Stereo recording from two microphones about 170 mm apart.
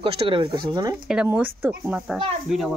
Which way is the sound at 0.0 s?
30° right (ahead or behind).